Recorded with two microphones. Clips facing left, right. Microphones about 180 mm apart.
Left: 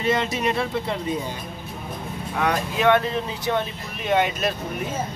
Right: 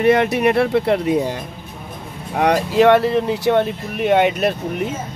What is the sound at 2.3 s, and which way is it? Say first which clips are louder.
Speech: right 9 dB; 80° right.